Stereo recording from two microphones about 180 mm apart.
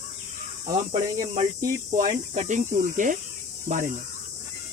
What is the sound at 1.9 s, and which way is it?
Speech, 45° right (ahead or behind).